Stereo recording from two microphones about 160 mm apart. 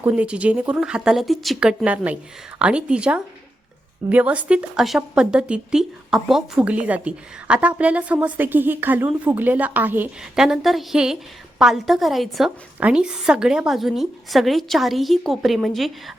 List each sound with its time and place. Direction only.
0.0 s a woman's voice: 5° right (ahead or behind)